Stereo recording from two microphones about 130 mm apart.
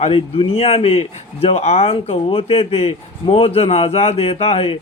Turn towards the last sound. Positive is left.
turn(degrees=50)  # may be behind; listen again after turning